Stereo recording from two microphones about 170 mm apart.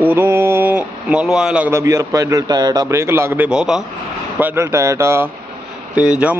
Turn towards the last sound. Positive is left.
turn(degrees=-5)  # may be behind; listen again after turning